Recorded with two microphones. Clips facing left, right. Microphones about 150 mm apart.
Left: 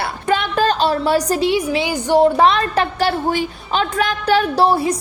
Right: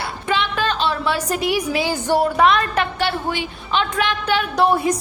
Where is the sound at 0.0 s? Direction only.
45° left (ahead or behind); by 1.9 s 25° left (ahead or behind).